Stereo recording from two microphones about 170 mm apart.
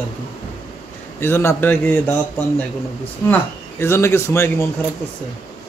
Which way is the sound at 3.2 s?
15° left (ahead or behind).